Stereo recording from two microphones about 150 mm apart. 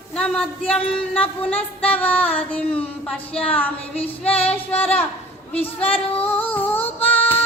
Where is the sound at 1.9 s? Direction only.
10° left (ahead or behind).